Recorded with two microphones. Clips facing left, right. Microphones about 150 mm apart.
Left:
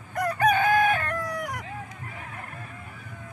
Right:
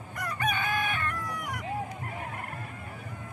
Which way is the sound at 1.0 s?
40° left (ahead or behind).